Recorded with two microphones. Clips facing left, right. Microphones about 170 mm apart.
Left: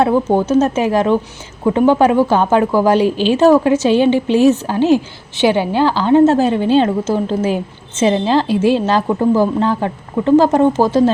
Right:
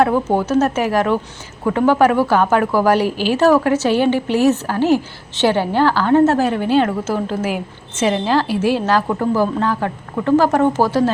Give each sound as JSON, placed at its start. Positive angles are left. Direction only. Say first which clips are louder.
{"t": 0.0, "sound": "a woman's voice", "louder": "left 2 dB", "side_deg": 20}